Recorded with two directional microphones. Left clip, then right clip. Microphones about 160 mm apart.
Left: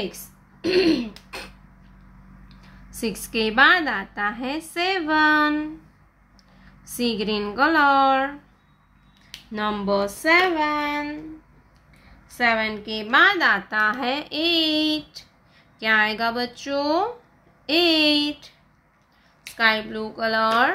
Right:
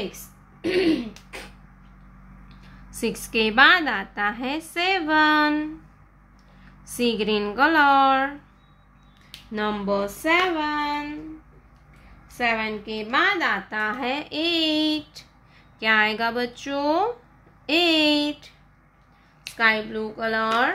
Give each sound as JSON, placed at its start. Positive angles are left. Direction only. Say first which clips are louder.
{"t": 0.1, "sound": "throat clearing", "louder": "left 1 dB", "side_deg": 25}
{"t": 2.4, "sound": "a woman's voice", "louder": "even", "side_deg": -5}
{"t": 6.8, "sound": "a woman's voice", "louder": "right 2 dB", "side_deg": -5}
{"t": 9.5, "sound": "a woman's voice", "louder": "left 1 dB", "side_deg": 0}
{"t": 10.7, "sound": "a sound", "louder": "left 1 dB", "side_deg": 20}
{"t": 12.4, "sound": "a woman's voice", "louder": "left 3 dB", "side_deg": 20}
{"t": 19.5, "sound": "a woman's voice", "louder": "even", "side_deg": 0}